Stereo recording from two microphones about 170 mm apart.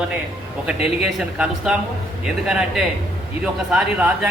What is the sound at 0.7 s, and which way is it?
Speech, 5° right (ahead or behind).